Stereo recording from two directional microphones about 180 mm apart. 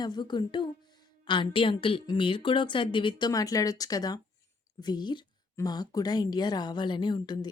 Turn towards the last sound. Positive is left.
turn(degrees=25)  # may be behind; listen again after turning